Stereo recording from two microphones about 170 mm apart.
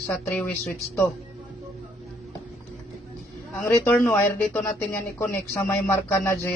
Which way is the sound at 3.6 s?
15° left (ahead or behind).